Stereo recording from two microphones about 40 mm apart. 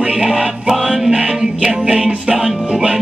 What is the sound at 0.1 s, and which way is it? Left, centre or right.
Music, centre.